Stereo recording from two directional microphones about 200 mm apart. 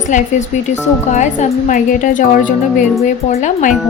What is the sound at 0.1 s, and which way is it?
Speech, 35° left (ahead or behind).